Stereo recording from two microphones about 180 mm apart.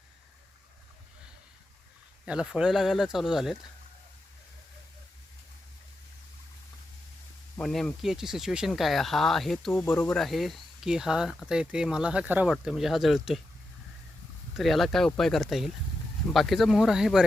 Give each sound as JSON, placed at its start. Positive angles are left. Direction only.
{"t": 2.2, "sound": "speech", "side_deg": -5}
{"t": 7.5, "sound": "speech", "side_deg": 5}
{"t": 9.7, "sound": "speech", "side_deg": 15}
{"t": 14.5, "sound": "speech", "side_deg": 0}